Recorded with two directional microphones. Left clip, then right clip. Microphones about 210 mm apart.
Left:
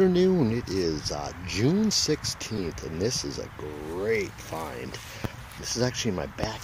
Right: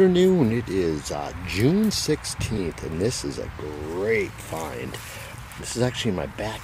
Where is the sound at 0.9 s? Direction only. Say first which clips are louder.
Right 3 dB; 20° left (ahead or behind).